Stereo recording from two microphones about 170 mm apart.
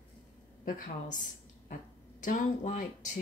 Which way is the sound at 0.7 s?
50° left (ahead or behind).